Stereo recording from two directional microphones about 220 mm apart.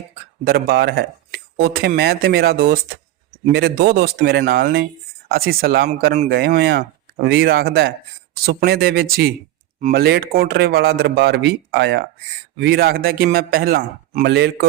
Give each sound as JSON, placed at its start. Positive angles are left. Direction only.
{"t": 0.4, "sound": "speech", "side_deg": -45}